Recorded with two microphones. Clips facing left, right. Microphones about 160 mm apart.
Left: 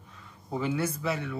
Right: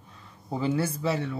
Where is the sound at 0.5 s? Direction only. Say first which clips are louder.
Right 2 dB; 30° right (ahead or behind).